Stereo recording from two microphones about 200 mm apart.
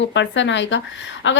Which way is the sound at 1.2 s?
65° left (ahead or behind).